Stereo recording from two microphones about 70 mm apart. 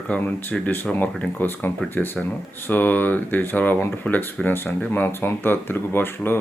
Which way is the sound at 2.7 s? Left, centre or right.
Left.